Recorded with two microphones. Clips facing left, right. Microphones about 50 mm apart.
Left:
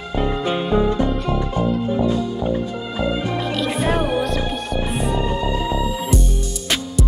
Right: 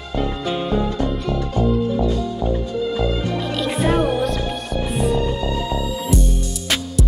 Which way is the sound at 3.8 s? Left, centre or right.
Centre.